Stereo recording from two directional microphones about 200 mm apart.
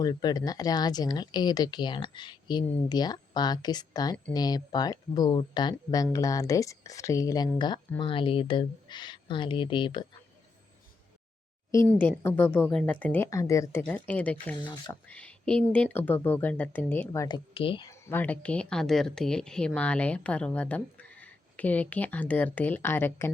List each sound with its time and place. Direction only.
0.0 s speech: 20° left (ahead or behind)
11.7 s speech: 10° left (ahead or behind)